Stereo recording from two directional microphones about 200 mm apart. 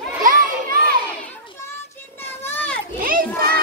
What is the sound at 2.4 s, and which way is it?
Children playing, 5° left (ahead or behind).